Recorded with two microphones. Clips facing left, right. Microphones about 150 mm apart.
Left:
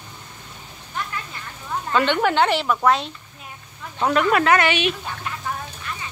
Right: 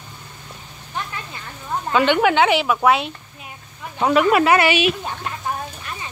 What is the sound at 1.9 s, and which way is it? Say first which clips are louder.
Speech: right 3 dB; 5° right (ahead or behind).